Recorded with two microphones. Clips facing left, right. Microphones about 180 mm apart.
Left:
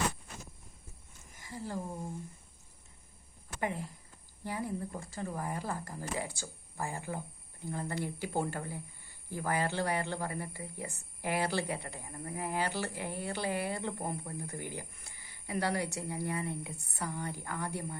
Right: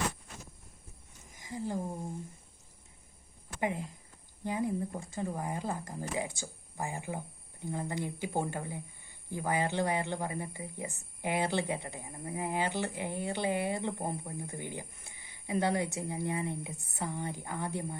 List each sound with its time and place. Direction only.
1.4 s speech: 15° right (ahead or behind)
3.6 s speech: 15° right (ahead or behind)